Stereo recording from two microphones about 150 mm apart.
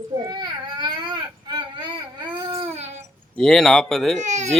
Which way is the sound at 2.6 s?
45° right (ahead or behind).